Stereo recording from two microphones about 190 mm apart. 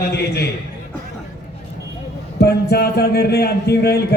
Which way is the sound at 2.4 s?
55° left (ahead or behind).